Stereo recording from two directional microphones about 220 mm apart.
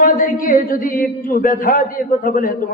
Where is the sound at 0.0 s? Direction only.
40° left (ahead or behind).